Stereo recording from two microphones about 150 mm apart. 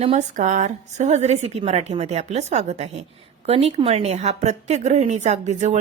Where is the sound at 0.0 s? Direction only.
50° right (ahead or behind).